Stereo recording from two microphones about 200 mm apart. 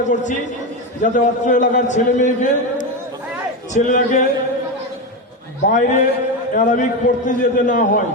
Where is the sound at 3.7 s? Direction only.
40° left (ahead or behind).